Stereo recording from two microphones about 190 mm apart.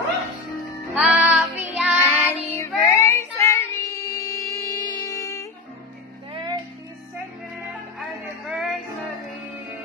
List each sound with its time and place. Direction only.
0.9 s child singing: 5° right (ahead or behind)
2.0 s child singing: 10° left (ahead or behind)
6.3 s music: 25° right (ahead or behind)
8.0 s music: 5° right (ahead or behind)